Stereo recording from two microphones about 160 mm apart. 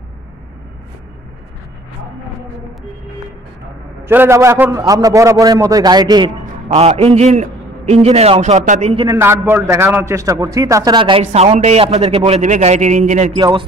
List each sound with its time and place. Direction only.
4.0 s a man's voice: 15° right (ahead or behind)
6.4 s a man's voice: 45° right (ahead or behind)
9.0 s a man's voice: 15° right (ahead or behind); by 13.3 s 50° right (ahead or behind)
13.4 s a man's voice: 25° right (ahead or behind)